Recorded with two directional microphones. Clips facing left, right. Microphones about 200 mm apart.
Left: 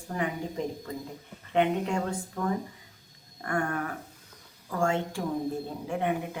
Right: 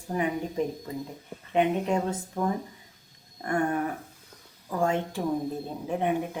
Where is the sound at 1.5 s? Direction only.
20° right (ahead or behind).